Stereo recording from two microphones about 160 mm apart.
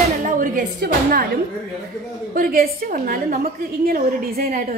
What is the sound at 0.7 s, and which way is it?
Speech, 75° right (ahead or behind).